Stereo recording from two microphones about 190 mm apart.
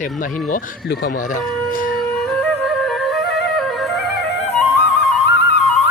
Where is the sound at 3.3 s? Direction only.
Centre (ahead or behind).